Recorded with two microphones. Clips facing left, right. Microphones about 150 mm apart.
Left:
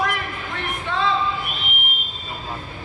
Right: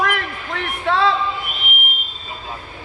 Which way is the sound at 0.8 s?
90° right.